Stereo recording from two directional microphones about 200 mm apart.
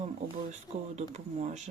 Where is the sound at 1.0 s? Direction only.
35° right (ahead or behind).